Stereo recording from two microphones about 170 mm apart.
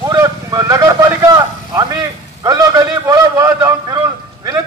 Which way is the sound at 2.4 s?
25° right (ahead or behind).